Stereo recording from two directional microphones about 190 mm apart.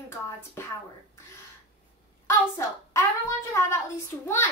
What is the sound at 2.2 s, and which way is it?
A child's voice, 15° left (ahead or behind).